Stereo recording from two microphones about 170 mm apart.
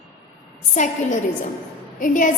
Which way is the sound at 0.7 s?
45° left (ahead or behind).